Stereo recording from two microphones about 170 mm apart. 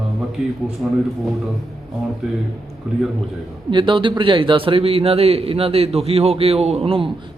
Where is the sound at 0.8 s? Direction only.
5° right (ahead or behind).